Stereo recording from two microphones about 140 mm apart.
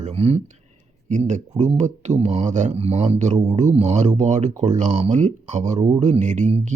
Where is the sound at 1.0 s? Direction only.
60° right (ahead or behind).